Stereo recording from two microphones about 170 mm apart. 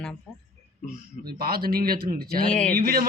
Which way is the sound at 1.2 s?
60° right (ahead or behind).